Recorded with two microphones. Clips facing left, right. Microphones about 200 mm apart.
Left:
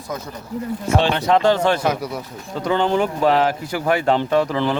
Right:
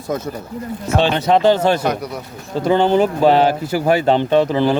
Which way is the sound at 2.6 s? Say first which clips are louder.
Right 5 dB; 35° right (ahead or behind).